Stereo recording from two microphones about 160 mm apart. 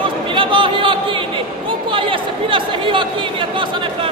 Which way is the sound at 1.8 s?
35° right (ahead or behind).